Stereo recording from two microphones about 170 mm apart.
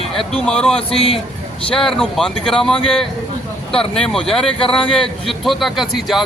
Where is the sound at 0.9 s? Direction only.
35° left (ahead or behind).